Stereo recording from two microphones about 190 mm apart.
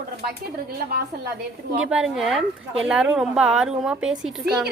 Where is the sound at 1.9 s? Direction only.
5° right (ahead or behind).